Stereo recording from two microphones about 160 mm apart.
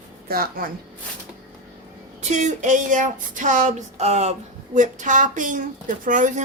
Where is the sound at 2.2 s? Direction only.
50° right (ahead or behind).